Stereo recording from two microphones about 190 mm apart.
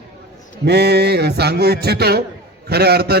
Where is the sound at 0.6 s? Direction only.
60° right (ahead or behind).